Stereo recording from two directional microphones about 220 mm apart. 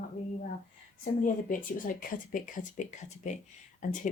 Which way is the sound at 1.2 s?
40° left (ahead or behind).